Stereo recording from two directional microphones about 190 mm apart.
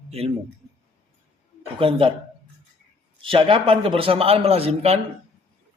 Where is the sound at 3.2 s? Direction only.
25° right (ahead or behind).